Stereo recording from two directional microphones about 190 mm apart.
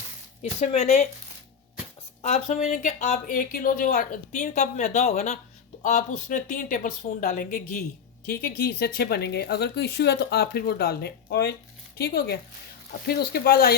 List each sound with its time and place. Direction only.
0.6 s a woman's voice: 35° left (ahead or behind)
2.2 s a woman's voice: 35° left (ahead or behind); by 13.7 s 55° left (ahead or behind)